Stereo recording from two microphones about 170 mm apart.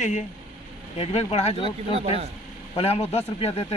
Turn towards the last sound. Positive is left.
turn(degrees=35)  # may be behind; listen again after turning